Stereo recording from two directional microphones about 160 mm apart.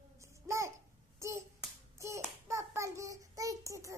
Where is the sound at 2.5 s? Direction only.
15° right (ahead or behind).